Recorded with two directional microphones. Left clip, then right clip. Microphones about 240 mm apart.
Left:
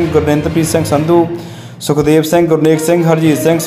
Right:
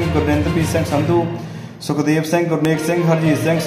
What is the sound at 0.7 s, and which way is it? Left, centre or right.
A man's voice, left.